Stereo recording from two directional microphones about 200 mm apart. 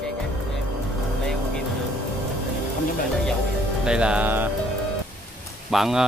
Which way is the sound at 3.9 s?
5° right (ahead or behind).